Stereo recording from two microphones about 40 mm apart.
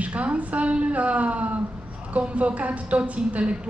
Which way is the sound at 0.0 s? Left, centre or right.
Right.